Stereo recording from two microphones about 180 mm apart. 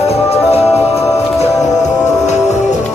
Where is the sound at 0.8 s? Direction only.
15° left (ahead or behind).